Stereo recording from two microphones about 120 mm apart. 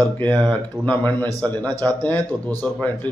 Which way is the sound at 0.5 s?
15° left (ahead or behind).